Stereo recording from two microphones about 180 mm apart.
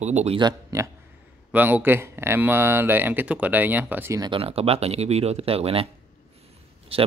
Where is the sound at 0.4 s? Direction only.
20° right (ahead or behind).